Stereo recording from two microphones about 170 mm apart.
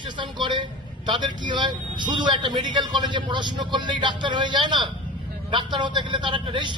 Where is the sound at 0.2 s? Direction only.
30° right (ahead or behind).